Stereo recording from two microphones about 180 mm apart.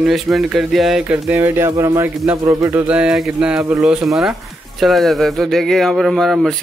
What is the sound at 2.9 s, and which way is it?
Speech, 5° right (ahead or behind).